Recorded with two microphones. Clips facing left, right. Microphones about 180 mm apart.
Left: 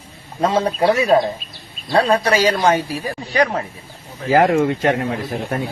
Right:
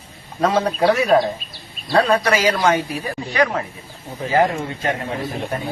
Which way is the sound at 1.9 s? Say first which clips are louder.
Left 1 dB; 30° left (ahead or behind).